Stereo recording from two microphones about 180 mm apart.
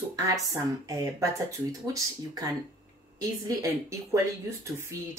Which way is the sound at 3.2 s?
20° right (ahead or behind).